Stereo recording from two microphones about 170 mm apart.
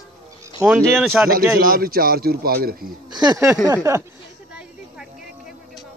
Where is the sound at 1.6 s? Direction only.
60° right (ahead or behind).